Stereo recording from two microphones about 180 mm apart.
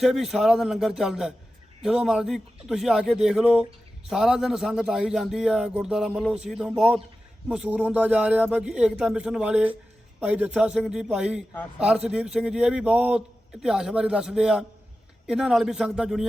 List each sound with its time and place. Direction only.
0.0 s a man's voice: centre (ahead or behind)